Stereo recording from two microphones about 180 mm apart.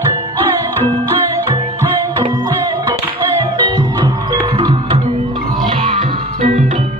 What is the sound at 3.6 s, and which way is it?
Music, 25° right (ahead or behind).